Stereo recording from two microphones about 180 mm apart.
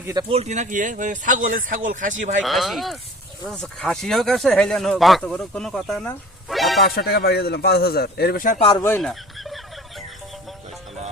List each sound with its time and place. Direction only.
0.0 s speech: 20° right (ahead or behind)
0.3 s speech: 35° right (ahead or behind)
2.4 s speech: centre (ahead or behind)
6.8 s a man's voice: 60° left (ahead or behind)
8.5 s speech: 30° left (ahead or behind)
9.0 s fowl: centre (ahead or behind)